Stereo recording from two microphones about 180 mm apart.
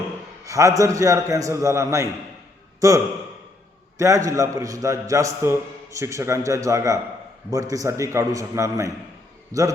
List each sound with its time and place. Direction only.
0.4 s a man's voice: 15° right (ahead or behind)